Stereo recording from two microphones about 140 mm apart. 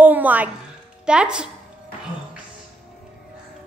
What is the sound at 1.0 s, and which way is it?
Speech, 5° right (ahead or behind).